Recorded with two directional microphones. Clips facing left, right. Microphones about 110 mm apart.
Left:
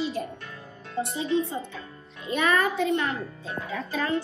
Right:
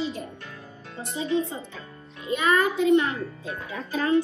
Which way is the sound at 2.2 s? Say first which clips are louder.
Right 1 dB; 25° right (ahead or behind).